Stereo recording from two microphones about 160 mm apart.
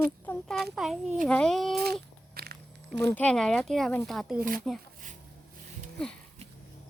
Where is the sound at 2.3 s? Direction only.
75° right (ahead or behind).